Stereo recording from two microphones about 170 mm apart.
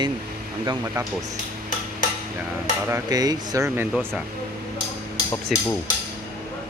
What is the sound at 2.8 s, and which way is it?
Speech, 20° right (ahead or behind).